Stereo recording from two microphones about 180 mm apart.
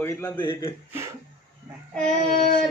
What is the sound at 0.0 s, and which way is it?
Speech, 10° left (ahead or behind).